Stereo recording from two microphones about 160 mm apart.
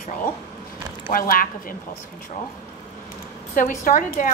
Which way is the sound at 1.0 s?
65° left (ahead or behind).